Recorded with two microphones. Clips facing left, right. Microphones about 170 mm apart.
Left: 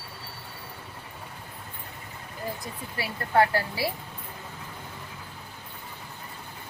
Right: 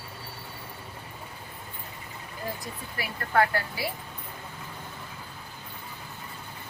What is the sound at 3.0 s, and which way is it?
Speech, 30° left (ahead or behind).